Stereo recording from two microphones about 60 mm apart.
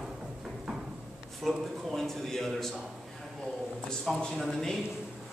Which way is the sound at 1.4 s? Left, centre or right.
Centre.